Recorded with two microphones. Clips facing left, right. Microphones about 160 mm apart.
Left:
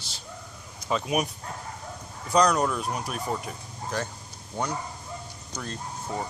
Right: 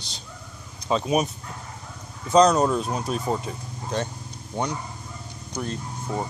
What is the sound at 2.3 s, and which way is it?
Speech, 20° right (ahead or behind).